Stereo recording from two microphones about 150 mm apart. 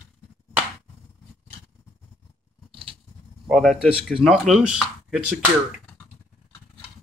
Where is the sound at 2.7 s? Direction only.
35° right (ahead or behind).